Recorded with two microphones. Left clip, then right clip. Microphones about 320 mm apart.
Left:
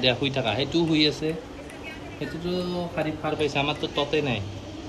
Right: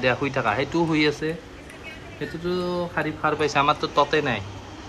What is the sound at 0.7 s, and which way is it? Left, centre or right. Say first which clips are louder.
Speech: right 1 dB; centre.